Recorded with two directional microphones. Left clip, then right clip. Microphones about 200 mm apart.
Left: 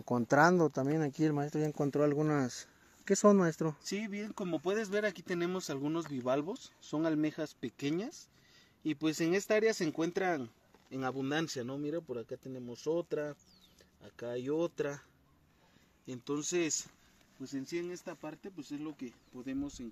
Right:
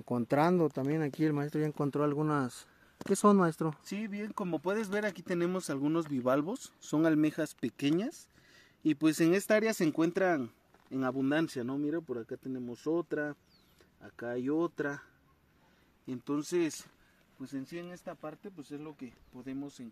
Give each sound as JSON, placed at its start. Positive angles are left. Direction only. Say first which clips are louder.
{"t": 0.0, "sound": "speech", "louder": "left 2 dB", "side_deg": -5}
{"t": 3.1, "sound": "speech", "louder": "even", "side_deg": -15}
{"t": 3.8, "sound": "speech", "louder": "left 1 dB", "side_deg": -25}
{"t": 16.1, "sound": "speech", "louder": "right 2 dB", "side_deg": -40}